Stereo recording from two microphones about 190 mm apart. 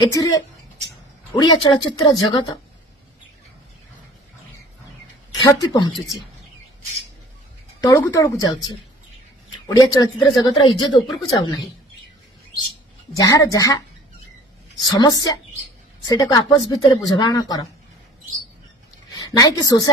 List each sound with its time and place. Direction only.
0.1 s speech: 15° left (ahead or behind)
5.3 s a woman's voice: 20° left (ahead or behind)
7.8 s speech: 15° left (ahead or behind)
9.7 s speech: 20° left (ahead or behind)
11.0 s speech: centre (ahead or behind)
11.3 s speech: 20° left (ahead or behind)
13.1 s speech: 20° left (ahead or behind)
14.8 s speech: 20° left (ahead or behind)
19.2 s speech: 20° left (ahead or behind)